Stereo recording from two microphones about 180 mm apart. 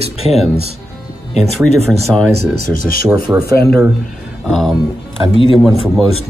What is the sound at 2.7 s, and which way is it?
Speech, 50° left (ahead or behind).